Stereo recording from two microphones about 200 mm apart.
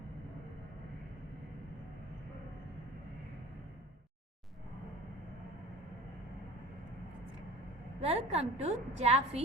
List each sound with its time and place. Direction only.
8.0 s a woman's voice: 30° right (ahead or behind)